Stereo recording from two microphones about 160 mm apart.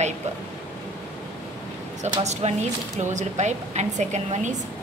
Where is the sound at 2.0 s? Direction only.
45° right (ahead or behind).